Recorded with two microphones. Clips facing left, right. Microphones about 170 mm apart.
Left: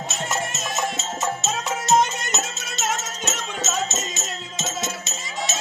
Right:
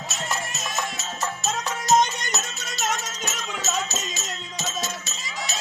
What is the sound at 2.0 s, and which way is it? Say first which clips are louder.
Music: left 1 dB; 5° left (ahead or behind).